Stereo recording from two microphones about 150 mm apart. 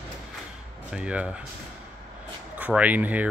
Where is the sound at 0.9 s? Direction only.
5° right (ahead or behind).